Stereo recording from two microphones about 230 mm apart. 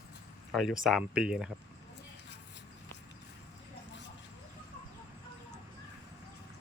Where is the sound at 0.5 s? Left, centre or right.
Centre.